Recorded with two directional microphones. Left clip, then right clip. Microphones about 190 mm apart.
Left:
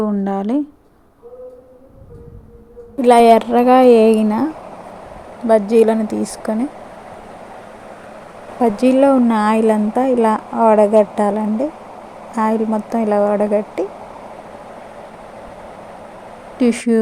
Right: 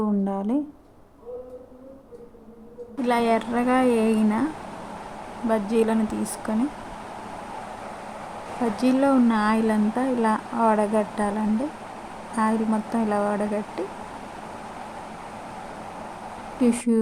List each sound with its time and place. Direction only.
0.0 s speech: 25° left (ahead or behind)
3.0 s speech: 30° left (ahead or behind)
5.5 s speech: 25° left (ahead or behind)
8.7 s speech: 25° left (ahead or behind)
12.4 s speech: 25° left (ahead or behind)
16.6 s speech: 20° left (ahead or behind)